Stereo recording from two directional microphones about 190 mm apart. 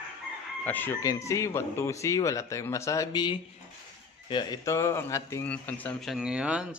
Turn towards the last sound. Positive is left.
turn(degrees=-5)  # may be behind; listen again after turning